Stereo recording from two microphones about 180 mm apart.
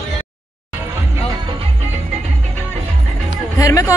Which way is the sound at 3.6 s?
20° left (ahead or behind).